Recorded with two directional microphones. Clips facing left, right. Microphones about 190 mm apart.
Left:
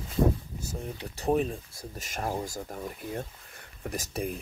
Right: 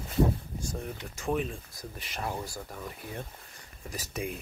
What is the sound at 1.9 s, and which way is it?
Speech, 45° left (ahead or behind).